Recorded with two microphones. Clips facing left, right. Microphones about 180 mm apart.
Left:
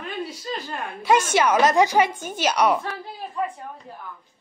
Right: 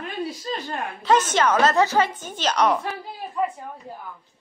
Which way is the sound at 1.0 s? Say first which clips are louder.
Even; 10° left (ahead or behind).